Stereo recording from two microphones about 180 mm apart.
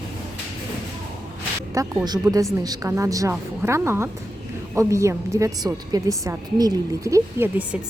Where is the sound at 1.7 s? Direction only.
20° right (ahead or behind).